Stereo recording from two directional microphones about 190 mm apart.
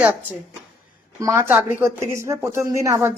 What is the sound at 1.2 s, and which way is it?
A woman's voice, 15° right (ahead or behind).